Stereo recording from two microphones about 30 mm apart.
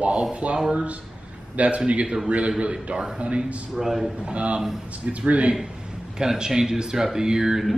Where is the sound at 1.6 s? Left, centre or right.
Right.